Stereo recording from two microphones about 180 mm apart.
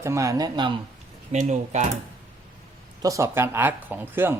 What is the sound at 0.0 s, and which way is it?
Speech, 15° right (ahead or behind).